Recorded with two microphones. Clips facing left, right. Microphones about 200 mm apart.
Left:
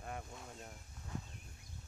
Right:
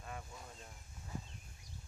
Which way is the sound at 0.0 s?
50° left (ahead or behind).